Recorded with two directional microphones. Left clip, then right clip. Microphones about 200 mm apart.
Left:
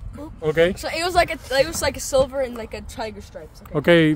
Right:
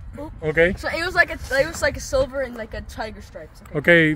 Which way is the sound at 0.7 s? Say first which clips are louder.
Even; 50° left (ahead or behind).